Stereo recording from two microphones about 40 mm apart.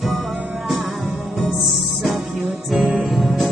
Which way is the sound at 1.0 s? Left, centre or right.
Centre.